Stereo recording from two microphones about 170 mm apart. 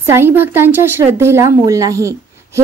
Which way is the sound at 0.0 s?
15° right (ahead or behind).